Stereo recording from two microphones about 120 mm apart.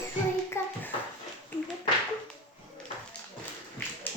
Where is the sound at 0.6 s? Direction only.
20° left (ahead or behind).